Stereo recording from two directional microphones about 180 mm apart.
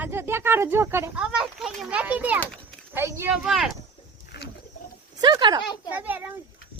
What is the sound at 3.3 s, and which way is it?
Speech, centre (ahead or behind).